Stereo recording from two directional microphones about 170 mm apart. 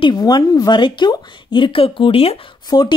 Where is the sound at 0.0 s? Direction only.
25° left (ahead or behind).